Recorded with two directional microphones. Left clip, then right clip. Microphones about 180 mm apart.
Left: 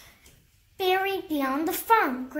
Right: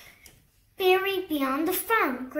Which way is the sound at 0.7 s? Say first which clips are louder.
Right 2 dB; 50° left (ahead or behind).